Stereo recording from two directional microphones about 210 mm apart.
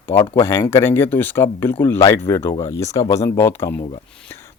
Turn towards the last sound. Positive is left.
turn(degrees=10)  # may be behind; listen again after turning